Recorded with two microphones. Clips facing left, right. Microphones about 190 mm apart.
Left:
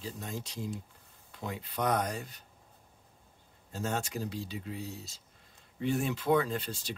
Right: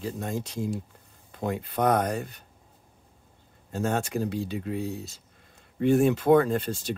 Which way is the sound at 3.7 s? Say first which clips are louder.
Right 7 dB; 55° right (ahead or behind).